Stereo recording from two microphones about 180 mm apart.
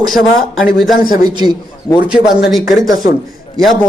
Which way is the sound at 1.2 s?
25° right (ahead or behind).